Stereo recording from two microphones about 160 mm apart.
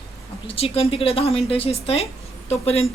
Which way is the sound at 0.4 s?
40° left (ahead or behind).